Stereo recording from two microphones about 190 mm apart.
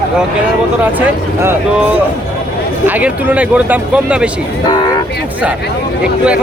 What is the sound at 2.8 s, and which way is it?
Speech, 10° right (ahead or behind).